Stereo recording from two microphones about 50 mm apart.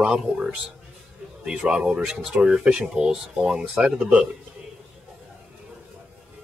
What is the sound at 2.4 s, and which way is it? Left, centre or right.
Speech, right.